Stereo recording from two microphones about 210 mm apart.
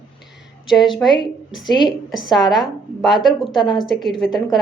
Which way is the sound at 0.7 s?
Centre (ahead or behind).